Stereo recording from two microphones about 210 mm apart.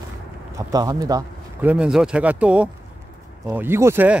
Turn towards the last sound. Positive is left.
turn(degrees=-10)  # may be behind; listen again after turning